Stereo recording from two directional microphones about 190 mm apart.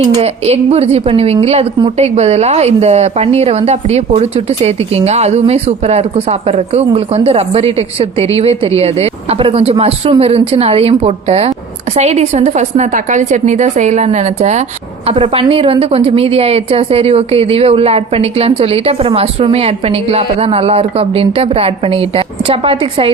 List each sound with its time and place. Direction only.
0.2 s a woman's voice: 35° right (ahead or behind)